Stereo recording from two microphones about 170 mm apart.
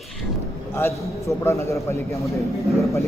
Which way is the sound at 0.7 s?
15° left (ahead or behind).